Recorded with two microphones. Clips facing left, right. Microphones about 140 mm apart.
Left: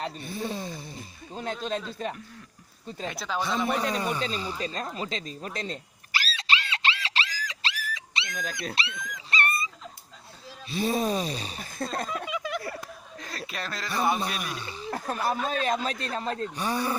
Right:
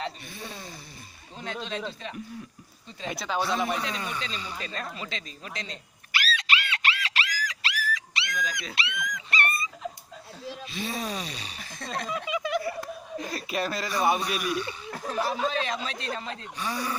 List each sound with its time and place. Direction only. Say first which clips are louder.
0.3 s a sound: left 8 dB; 30° left (ahead or behind)
1.4 s speech: left 3 dB; 45° left (ahead or behind)
3.2 s speech: right 2 dB; 5° right (ahead or behind)
3.8 s a sound: left 5 dB; 45° left (ahead or behind); by 8.4 s 25° left (ahead or behind)
8.7 s dog: right 1 dB; 30° left (ahead or behind)
10.7 s speech: left 8 dB; 35° left (ahead or behind)
11.8 s speech: left 1 dB; 50° left (ahead or behind)
12.3 s a sound: right 4 dB; centre (ahead or behind)
13.1 s chuckle: right 7 dB; 15° right (ahead or behind)
13.5 s speech: right 5 dB; 10° right (ahead or behind)
15.0 s speech: right 1 dB; 50° left (ahead or behind); by 16.9 s 35° left (ahead or behind)